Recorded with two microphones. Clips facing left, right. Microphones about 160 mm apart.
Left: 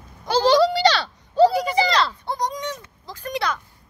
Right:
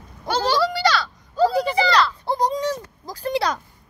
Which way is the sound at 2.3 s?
30° right (ahead or behind).